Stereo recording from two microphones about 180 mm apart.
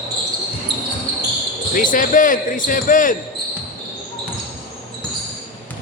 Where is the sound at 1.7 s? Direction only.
50° left (ahead or behind).